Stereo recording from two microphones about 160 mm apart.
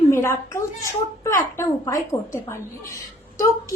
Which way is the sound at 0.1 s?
15° left (ahead or behind).